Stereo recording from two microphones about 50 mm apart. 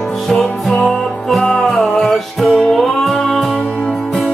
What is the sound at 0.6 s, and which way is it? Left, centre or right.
Music, centre.